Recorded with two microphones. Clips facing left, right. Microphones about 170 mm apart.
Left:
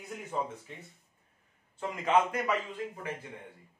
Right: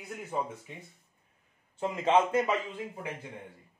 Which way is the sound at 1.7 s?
25° right (ahead or behind).